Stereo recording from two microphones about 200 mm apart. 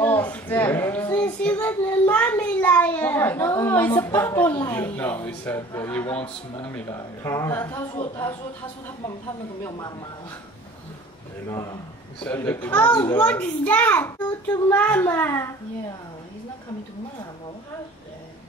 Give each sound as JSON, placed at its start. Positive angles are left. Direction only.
{"t": 0.0, "sound": "child singing", "side_deg": 10}
{"t": 3.9, "sound": "speech", "side_deg": 10}
{"t": 9.7, "sound": "speech", "side_deg": 20}
{"t": 11.4, "sound": "speech", "side_deg": 15}